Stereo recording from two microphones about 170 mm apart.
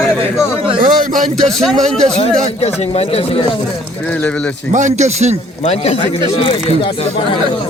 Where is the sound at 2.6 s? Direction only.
40° left (ahead or behind).